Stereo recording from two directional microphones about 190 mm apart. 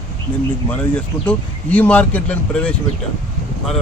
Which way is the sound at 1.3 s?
10° left (ahead or behind).